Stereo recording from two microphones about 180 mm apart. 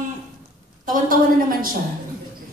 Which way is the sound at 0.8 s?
50° right (ahead or behind).